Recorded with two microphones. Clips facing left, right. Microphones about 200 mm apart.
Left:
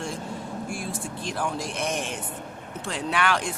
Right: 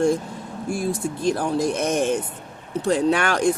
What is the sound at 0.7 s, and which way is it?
Speech, 40° right (ahead or behind).